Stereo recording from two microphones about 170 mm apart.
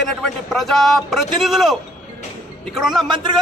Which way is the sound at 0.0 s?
Centre (ahead or behind).